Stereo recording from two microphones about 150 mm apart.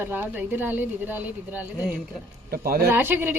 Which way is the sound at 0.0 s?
15° right (ahead or behind).